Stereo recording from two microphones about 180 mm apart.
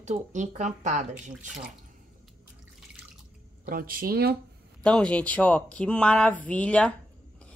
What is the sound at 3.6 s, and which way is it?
Speech, 55° right (ahead or behind).